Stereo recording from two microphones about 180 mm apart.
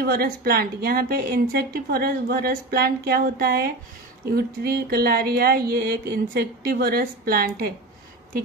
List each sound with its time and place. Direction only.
0.0 s a woman's voice: 55° right (ahead or behind)